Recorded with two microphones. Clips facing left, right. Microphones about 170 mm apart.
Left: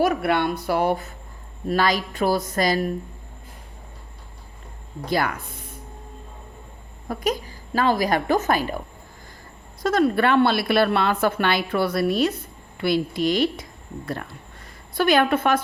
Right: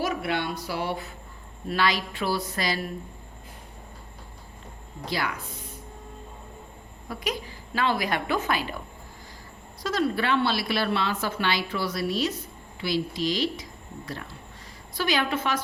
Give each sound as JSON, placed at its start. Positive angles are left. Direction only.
{"t": 0.0, "sound": "a woman's voice", "side_deg": 55}
{"t": 5.0, "sound": "a woman's voice", "side_deg": 50}
{"t": 7.1, "sound": "a woman's voice", "side_deg": 40}
{"t": 9.8, "sound": "a woman's voice", "side_deg": 55}